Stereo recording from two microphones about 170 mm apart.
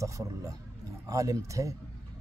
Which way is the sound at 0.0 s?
20° right (ahead or behind).